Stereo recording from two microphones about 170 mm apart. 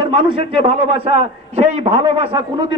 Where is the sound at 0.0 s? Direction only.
35° right (ahead or behind).